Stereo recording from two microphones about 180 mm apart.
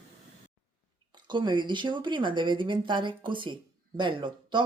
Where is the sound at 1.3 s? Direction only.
25° right (ahead or behind).